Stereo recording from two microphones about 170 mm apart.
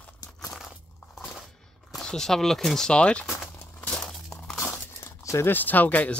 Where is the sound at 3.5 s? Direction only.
10° left (ahead or behind).